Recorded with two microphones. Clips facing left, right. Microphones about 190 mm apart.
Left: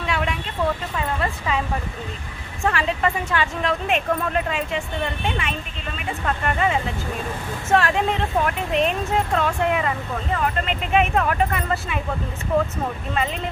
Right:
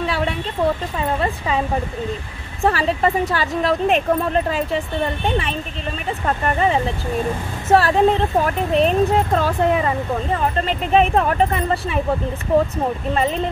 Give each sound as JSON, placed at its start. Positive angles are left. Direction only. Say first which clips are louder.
{"t": 0.0, "sound": "a sound", "louder": "right 3 dB", "side_deg": -35}
{"t": 0.9, "sound": "speech", "louder": "right 4 dB", "side_deg": -30}
{"t": 2.6, "sound": "speech", "louder": "right 4 dB", "side_deg": -35}